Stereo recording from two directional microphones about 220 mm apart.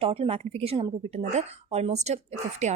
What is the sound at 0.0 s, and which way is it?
A woman's voice, 25° right (ahead or behind).